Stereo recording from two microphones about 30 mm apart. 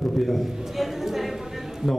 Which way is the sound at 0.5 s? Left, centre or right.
Centre.